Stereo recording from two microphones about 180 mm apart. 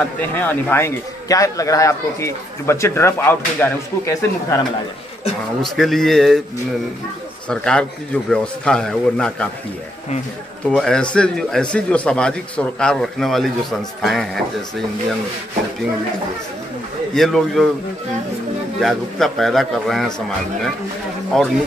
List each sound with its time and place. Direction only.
0.3 s a man's voice: 10° left (ahead or behind)
5.6 s a man's voice: centre (ahead or behind)
7.4 s a man's voice: 5° left (ahead or behind)
10.6 s a man's voice: 5° left (ahead or behind)
17.1 s a man's voice: centre (ahead or behind)
18.8 s a man's voice: centre (ahead or behind)
21.3 s a man's voice: centre (ahead or behind)